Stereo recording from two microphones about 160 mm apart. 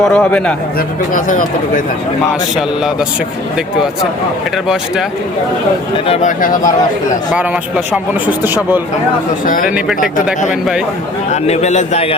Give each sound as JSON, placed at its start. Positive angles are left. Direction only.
{"t": 0.0, "sound": "speech", "side_deg": 5}
{"t": 1.1, "sound": "speech", "side_deg": 55}
{"t": 6.1, "sound": "speech", "side_deg": 55}
{"t": 8.3, "sound": "speech", "side_deg": -10}
{"t": 11.3, "sound": "a man's voice", "side_deg": 45}